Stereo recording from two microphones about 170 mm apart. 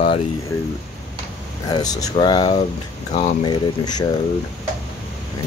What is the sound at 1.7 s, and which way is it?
Speech, 25° left (ahead or behind).